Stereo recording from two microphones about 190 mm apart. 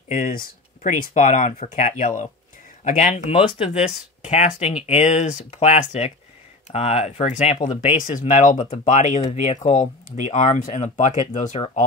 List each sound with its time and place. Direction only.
0.1 s speech: 45° left (ahead or behind); by 8.0 s 25° left (ahead or behind)
8.0 s speech: 45° left (ahead or behind)